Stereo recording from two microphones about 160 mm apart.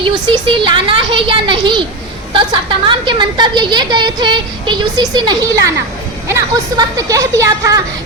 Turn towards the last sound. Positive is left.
turn(degrees=-20)  # may be behind; listen again after turning